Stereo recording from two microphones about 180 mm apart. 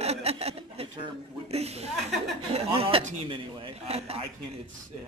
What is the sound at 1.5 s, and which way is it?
Chuckle, 35° right (ahead or behind).